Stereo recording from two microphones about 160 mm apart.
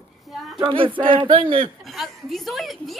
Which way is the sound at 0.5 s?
35° right (ahead or behind).